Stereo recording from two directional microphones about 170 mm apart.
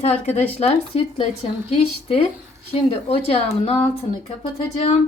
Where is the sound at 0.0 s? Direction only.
40° left (ahead or behind).